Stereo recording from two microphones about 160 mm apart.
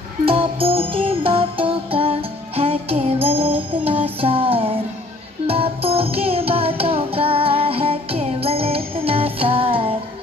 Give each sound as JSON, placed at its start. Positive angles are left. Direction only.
{"t": 0.2, "sound": "music", "side_deg": -35}